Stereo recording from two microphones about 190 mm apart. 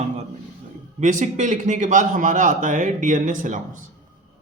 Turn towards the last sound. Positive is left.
turn(degrees=-40)  # may be behind; listen again after turning